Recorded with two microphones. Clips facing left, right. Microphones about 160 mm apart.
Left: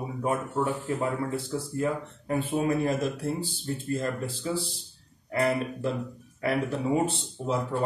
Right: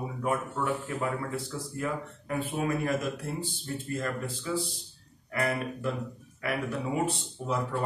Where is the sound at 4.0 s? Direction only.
30° left (ahead or behind).